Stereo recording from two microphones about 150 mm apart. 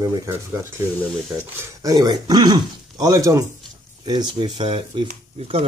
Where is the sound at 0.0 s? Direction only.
25° right (ahead or behind).